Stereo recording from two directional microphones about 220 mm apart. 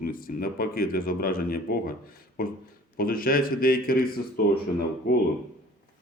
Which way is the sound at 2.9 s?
40° left (ahead or behind).